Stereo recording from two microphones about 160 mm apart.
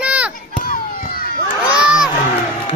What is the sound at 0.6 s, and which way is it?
Children playing, 60° left (ahead or behind).